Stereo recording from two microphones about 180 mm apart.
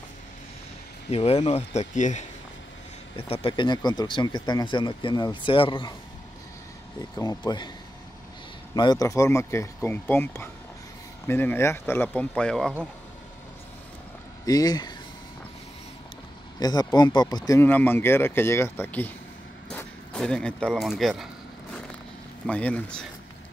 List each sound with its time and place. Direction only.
1.1 s speech: 35° left (ahead or behind)
3.2 s speech: 30° left (ahead or behind)
7.0 s speech: 20° left (ahead or behind)
8.7 s speech: 20° left (ahead or behind); by 12.7 s 5° left (ahead or behind)
14.4 s speech: 20° left (ahead or behind)
16.5 s speech: 20° left (ahead or behind); by 21.3 s centre (ahead or behind)
22.5 s speech: 10° left (ahead or behind)